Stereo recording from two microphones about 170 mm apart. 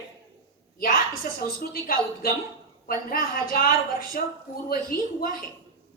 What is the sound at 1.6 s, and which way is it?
A woman's voice, 55° left (ahead or behind).